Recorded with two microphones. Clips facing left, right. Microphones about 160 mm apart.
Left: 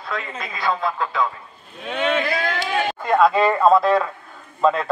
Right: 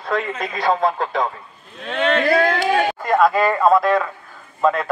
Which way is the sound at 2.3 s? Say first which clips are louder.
Right 7 dB; 40° right (ahead or behind).